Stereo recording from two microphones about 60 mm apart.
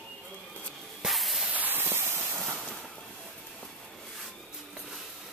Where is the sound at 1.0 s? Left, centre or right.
Centre.